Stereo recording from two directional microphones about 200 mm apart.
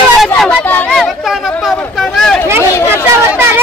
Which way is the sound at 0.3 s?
10° left (ahead or behind).